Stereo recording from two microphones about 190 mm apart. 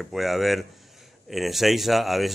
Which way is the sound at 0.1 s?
Centre (ahead or behind).